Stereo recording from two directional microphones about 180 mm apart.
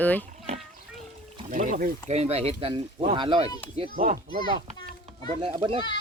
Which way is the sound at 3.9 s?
50° right (ahead or behind).